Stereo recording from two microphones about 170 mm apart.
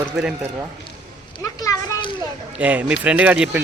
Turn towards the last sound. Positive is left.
turn(degrees=-10)  # may be behind; listen again after turning